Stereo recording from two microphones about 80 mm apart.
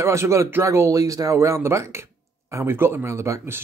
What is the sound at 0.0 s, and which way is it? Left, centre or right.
Speech, right.